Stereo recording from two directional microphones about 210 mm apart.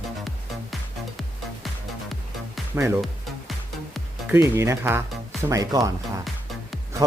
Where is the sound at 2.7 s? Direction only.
10° right (ahead or behind).